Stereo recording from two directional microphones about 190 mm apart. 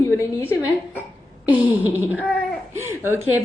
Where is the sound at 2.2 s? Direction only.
5° left (ahead or behind).